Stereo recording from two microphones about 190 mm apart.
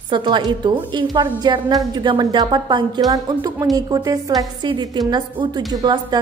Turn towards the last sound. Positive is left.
turn(degrees=-20)  # may be behind; listen again after turning